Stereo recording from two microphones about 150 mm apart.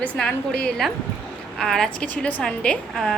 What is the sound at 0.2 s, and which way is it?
A woman's voice, 5° left (ahead or behind).